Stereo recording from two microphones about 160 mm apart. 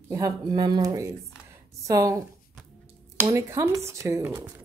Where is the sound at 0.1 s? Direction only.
25° right (ahead or behind).